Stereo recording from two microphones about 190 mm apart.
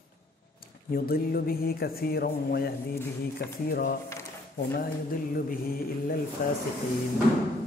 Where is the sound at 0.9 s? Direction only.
55° left (ahead or behind).